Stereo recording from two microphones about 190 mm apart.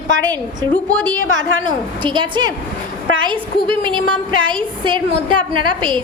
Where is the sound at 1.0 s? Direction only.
20° right (ahead or behind).